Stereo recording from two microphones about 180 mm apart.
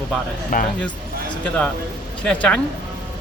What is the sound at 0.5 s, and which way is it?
Speech, 50° left (ahead or behind).